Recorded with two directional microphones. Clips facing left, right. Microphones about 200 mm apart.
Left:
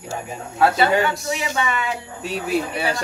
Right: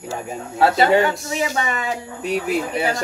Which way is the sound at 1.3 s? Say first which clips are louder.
Right 1 dB; 40° right (ahead or behind).